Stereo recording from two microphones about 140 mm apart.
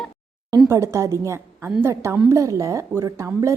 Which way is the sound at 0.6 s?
20° right (ahead or behind).